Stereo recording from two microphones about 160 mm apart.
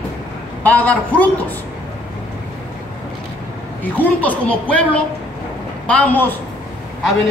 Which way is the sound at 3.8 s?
10° left (ahead or behind).